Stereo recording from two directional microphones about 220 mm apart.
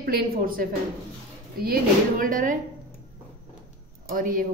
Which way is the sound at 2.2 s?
35° right (ahead or behind).